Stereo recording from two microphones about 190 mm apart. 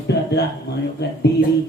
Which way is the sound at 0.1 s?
60° left (ahead or behind).